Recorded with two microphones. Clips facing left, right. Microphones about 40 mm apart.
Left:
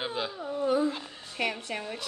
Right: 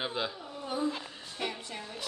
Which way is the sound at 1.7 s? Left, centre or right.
Left.